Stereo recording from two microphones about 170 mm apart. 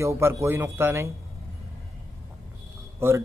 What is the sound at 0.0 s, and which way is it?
Speech, 15° right (ahead or behind).